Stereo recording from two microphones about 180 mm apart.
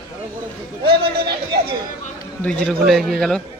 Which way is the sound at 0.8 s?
60° right (ahead or behind).